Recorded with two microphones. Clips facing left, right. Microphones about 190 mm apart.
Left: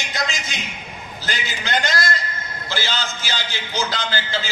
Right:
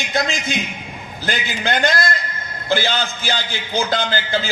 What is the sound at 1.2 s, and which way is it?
A man's voice, 55° right (ahead or behind).